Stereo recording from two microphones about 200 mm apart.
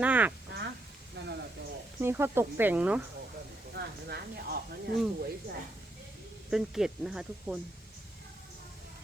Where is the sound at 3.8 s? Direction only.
55° right (ahead or behind).